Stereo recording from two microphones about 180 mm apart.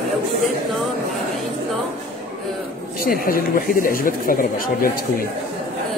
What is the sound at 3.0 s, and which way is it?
Speech, 50° left (ahead or behind).